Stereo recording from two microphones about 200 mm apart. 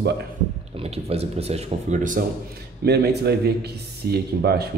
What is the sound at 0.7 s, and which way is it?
Speech, 30° right (ahead or behind).